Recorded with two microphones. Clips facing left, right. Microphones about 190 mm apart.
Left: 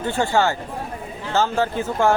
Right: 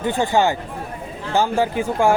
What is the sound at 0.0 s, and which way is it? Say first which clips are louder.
Speech: right 2 dB; 15° right (ahead or behind).